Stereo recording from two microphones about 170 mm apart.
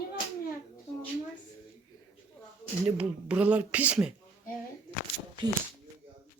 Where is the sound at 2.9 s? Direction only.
10° right (ahead or behind).